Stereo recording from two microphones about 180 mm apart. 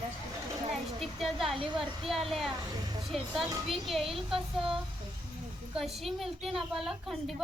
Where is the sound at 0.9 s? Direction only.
Centre (ahead or behind).